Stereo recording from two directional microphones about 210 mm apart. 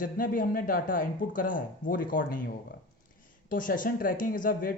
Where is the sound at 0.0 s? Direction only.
40° left (ahead or behind).